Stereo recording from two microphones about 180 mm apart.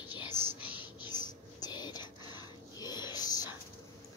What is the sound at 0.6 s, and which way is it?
Whispering, 25° left (ahead or behind).